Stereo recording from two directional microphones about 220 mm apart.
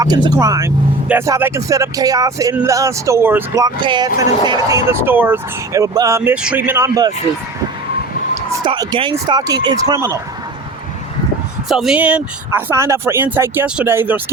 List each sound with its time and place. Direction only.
0.0 s speech: 15° right (ahead or behind)
8.5 s speech: 20° right (ahead or behind)
11.7 s speech: centre (ahead or behind)